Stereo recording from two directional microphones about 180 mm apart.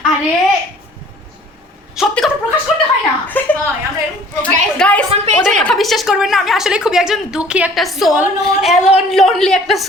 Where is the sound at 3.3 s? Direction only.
10° left (ahead or behind).